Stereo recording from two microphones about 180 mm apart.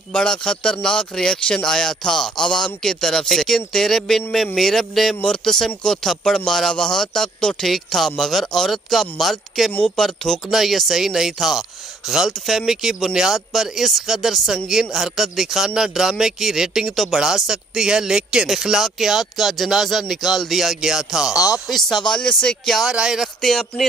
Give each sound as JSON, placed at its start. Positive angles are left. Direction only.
{"t": 0.1, "sound": "speech", "side_deg": 5}
{"t": 21.3, "sound": "speech", "side_deg": 20}
{"t": 21.6, "sound": "speech", "side_deg": 0}